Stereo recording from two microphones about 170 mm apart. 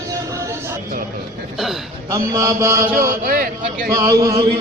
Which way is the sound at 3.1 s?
60° right (ahead or behind).